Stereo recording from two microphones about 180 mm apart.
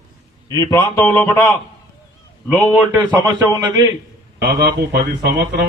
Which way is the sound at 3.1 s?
20° right (ahead or behind).